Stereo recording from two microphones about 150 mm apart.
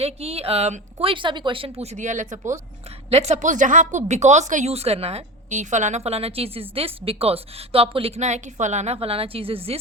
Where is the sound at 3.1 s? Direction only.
45° right (ahead or behind).